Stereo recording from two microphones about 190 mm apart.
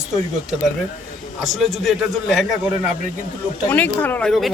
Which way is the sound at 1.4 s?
Centre (ahead or behind).